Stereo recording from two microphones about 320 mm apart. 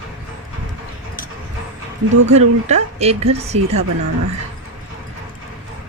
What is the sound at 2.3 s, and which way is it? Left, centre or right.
A woman's voice, right.